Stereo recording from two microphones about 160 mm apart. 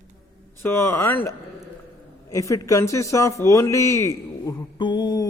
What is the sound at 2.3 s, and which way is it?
A man's voice, 20° left (ahead or behind).